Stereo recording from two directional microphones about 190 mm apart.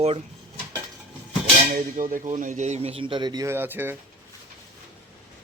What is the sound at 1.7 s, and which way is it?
Speech, 45° right (ahead or behind).